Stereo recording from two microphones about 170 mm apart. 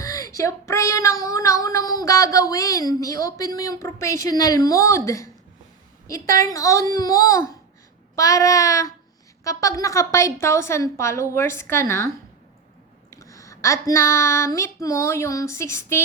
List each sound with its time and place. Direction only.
0.0 s child singing: 20° left (ahead or behind)
9.4 s a woman's voice: 20° left (ahead or behind)